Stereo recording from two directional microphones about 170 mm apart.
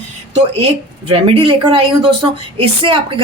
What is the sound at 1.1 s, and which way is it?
Speech, 35° right (ahead or behind).